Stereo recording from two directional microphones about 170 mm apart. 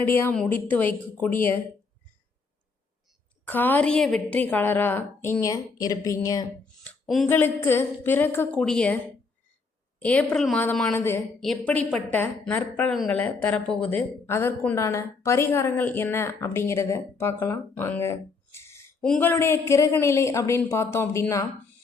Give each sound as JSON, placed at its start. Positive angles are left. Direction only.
{"t": 0.0, "sound": "a woman's voice", "side_deg": 15}
{"t": 3.4, "sound": "a woman's voice", "side_deg": 10}
{"t": 6.8, "sound": "speech", "side_deg": 0}
{"t": 7.3, "sound": "a woman's voice", "side_deg": 10}
{"t": 10.0, "sound": "a woman's voice", "side_deg": 5}